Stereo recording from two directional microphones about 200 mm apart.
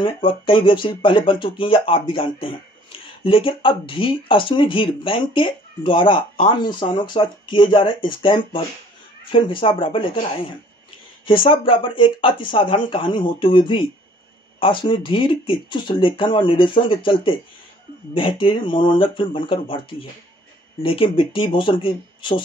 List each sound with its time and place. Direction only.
0.0 s speech: 25° left (ahead or behind)
11.2 s speech: 25° left (ahead or behind)